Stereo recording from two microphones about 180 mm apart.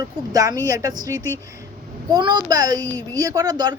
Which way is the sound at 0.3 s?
20° right (ahead or behind).